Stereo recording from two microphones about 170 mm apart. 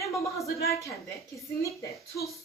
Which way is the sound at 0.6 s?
15° left (ahead or behind).